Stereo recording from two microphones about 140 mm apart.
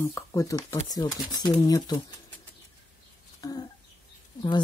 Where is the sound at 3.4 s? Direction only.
25° left (ahead or behind).